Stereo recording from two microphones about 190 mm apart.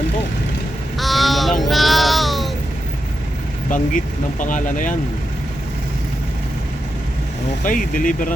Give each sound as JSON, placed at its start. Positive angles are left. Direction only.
{"t": 0.9, "sound": "a sound", "side_deg": 0}
{"t": 3.7, "sound": "speech", "side_deg": 45}
{"t": 7.6, "sound": "speech", "side_deg": 45}